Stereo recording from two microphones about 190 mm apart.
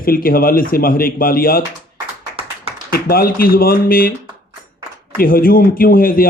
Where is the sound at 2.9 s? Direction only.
50° left (ahead or behind).